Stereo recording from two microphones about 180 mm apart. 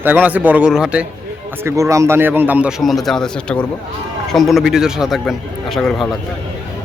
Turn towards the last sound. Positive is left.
turn(degrees=0)  # may be behind; listen again after turning